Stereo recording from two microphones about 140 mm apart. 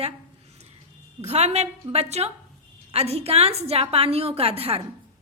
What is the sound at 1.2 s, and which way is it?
A woman's voice, 50° right (ahead or behind).